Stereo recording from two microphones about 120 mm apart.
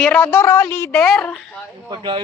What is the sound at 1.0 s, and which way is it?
Speech, 5° left (ahead or behind).